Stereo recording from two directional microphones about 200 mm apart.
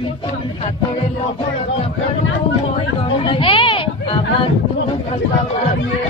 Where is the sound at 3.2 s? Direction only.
25° left (ahead or behind).